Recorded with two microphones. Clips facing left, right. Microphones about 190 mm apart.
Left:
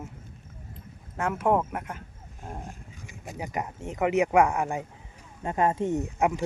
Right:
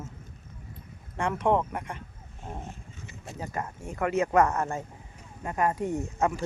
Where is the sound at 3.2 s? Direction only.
15° left (ahead or behind).